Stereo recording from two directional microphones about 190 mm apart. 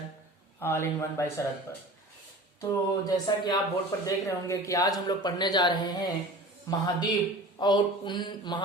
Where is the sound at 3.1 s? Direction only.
20° left (ahead or behind).